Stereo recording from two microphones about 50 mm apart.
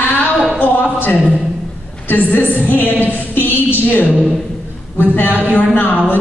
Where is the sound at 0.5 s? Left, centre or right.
Left.